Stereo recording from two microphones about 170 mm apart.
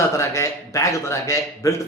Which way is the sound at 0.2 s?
15° left (ahead or behind).